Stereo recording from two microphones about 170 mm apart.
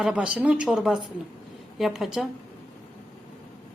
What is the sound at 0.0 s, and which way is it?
Speech, 5° right (ahead or behind).